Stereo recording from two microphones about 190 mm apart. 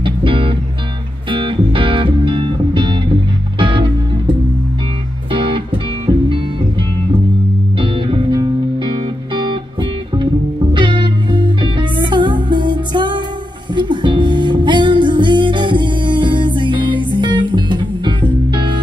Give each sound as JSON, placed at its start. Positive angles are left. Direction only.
{"t": 0.0, "sound": "music", "side_deg": -25}
{"t": 5.3, "sound": "music", "side_deg": -25}
{"t": 7.8, "sound": "music", "side_deg": -25}
{"t": 10.7, "sound": "music", "side_deg": -25}